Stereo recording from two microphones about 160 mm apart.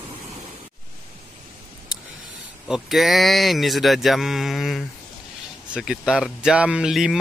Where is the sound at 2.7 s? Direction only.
Centre (ahead or behind).